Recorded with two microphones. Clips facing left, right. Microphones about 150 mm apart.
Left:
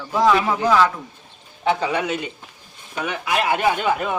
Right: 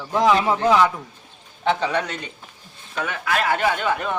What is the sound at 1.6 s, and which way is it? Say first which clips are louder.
Speech: left 1 dB; 5° left (ahead or behind).